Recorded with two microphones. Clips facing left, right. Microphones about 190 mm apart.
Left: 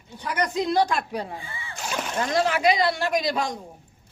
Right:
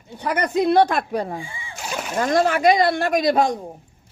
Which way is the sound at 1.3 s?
15° right (ahead or behind).